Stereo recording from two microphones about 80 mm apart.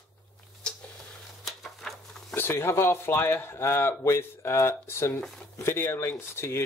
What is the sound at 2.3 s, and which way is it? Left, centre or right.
Speech, left.